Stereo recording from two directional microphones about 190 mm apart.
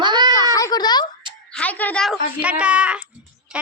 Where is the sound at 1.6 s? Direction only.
10° left (ahead or behind).